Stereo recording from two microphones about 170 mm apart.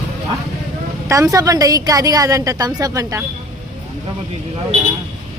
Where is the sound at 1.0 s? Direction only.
20° right (ahead or behind).